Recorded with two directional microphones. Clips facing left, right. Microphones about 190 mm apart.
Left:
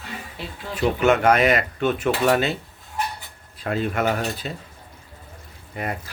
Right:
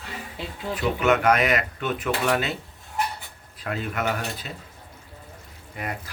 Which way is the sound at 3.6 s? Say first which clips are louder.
Left 5 dB; 30° left (ahead or behind).